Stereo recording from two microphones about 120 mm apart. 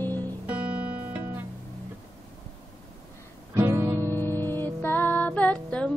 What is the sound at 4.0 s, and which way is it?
Music, 20° left (ahead or behind).